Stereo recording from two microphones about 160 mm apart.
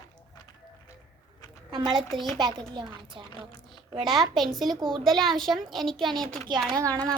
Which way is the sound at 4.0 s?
Centre (ahead or behind).